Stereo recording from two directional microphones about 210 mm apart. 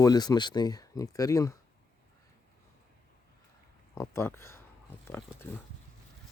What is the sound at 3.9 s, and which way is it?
Speech, 10° left (ahead or behind).